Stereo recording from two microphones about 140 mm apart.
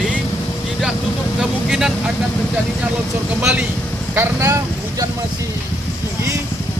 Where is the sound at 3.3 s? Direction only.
10° right (ahead or behind).